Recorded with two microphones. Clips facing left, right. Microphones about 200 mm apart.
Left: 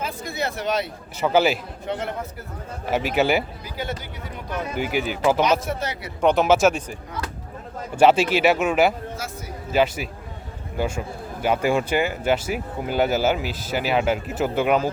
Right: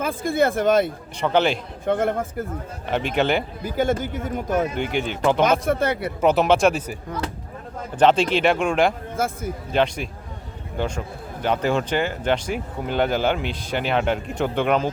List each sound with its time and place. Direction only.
0.0 s speech: 50° right (ahead or behind)
1.2 s speech: 5° left (ahead or behind)
1.9 s speech: 50° right (ahead or behind)
2.8 s speech: 5° left (ahead or behind)
3.6 s speech: 50° right (ahead or behind)
4.7 s speech: 5° left (ahead or behind)
5.4 s speech: 50° right (ahead or behind)
6.2 s speech: centre (ahead or behind)
7.9 s speech: 5° left (ahead or behind)
9.1 s speech: 55° right (ahead or behind)
9.7 s speech: 5° left (ahead or behind)